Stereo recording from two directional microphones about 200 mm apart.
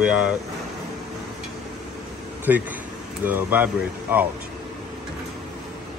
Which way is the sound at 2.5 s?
10° right (ahead or behind).